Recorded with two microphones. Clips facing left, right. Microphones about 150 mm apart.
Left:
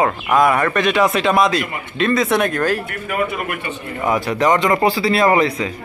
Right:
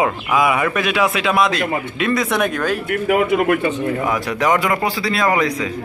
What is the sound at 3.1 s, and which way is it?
Speech, 90° right.